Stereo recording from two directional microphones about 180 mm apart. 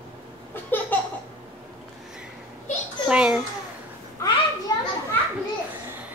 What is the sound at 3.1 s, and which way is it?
Babbling, 5° right (ahead or behind).